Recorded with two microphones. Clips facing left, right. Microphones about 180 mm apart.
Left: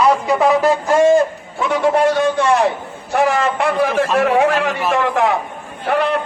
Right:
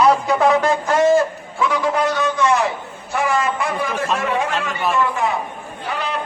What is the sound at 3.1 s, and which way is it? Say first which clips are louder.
A man's voice: left 4 dB; 60° left (ahead or behind).